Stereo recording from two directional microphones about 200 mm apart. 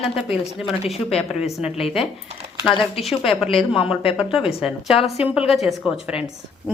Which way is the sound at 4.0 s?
30° left (ahead or behind).